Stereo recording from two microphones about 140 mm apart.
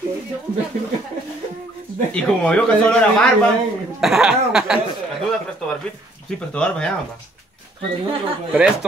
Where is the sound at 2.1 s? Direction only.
10° left (ahead or behind).